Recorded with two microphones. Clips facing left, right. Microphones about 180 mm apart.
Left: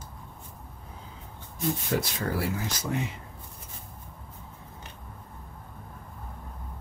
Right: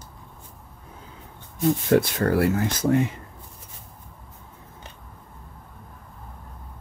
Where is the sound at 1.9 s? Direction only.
60° right (ahead or behind).